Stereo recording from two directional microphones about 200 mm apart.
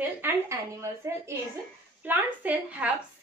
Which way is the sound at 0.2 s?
10° right (ahead or behind).